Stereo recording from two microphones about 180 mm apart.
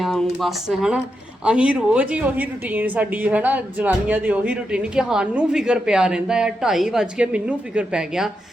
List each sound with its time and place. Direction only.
0.0 s a woman's voice: centre (ahead or behind)